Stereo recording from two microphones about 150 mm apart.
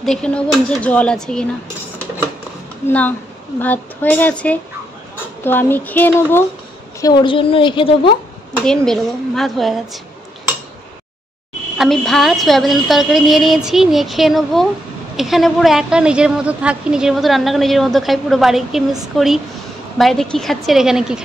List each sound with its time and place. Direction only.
0.0 s a woman's voice: 5° left (ahead or behind)
2.9 s a woman's voice: 10° left (ahead or behind)
7.0 s a woman's voice: 30° left (ahead or behind)
8.5 s a woman's voice: 5° left (ahead or behind)
11.8 s a woman's voice: 5° left (ahead or behind)